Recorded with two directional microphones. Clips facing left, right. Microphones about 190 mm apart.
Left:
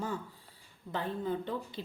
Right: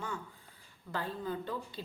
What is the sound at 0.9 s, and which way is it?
Speech, 20° left (ahead or behind).